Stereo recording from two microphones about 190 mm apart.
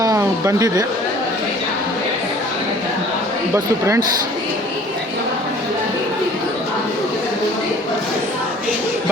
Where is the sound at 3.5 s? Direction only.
15° right (ahead or behind).